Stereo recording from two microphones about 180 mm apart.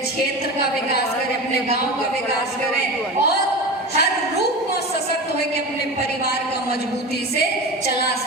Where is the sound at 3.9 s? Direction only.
65° left (ahead or behind).